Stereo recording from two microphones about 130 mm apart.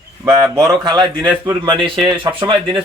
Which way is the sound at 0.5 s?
30° right (ahead or behind).